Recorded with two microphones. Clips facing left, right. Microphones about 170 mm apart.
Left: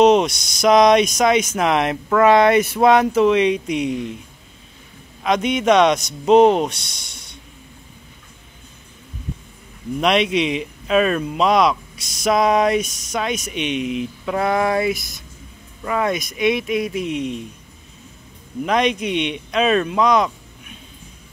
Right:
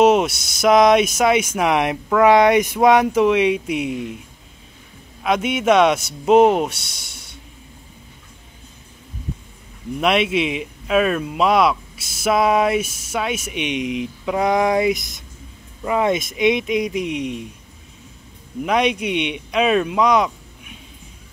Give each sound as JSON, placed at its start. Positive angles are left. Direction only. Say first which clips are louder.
{"t": 0.0, "sound": "speech", "louder": "left 1 dB", "side_deg": -5}
{"t": 5.2, "sound": "speech", "louder": "left 1 dB", "side_deg": -5}
{"t": 9.9, "sound": "speech", "louder": "left 1 dB", "side_deg": -5}
{"t": 18.6, "sound": "speech", "louder": "even", "side_deg": -10}